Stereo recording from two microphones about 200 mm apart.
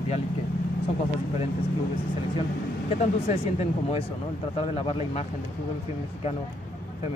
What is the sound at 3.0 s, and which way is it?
Speech, 35° left (ahead or behind).